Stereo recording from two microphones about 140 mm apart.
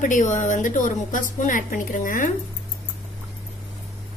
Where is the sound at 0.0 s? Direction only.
60° left (ahead or behind).